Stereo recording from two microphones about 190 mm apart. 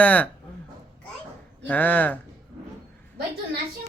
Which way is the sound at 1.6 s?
10° left (ahead or behind).